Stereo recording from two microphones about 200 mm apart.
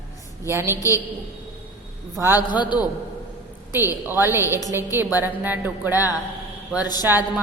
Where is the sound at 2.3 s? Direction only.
20° left (ahead or behind).